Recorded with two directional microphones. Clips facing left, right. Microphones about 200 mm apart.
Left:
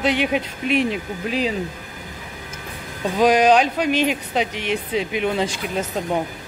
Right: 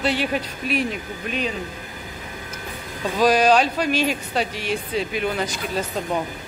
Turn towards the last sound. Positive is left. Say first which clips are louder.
# left 2 dB
turn(degrees=25)  # may be behind; listen again after turning